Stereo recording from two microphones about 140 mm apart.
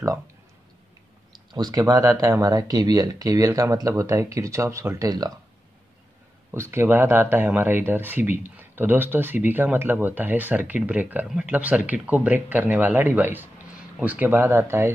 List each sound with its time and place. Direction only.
1.3 s speech: 30° right (ahead or behind)
6.5 s speech: 20° right (ahead or behind)